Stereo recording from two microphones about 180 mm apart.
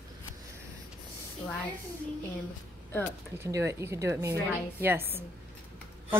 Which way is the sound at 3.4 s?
15° right (ahead or behind).